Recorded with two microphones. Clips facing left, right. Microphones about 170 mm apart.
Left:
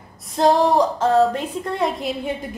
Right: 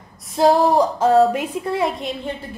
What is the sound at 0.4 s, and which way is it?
A woman's voice, 5° right (ahead or behind).